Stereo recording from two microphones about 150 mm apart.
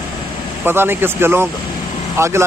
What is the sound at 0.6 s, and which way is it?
Speech, 15° right (ahead or behind).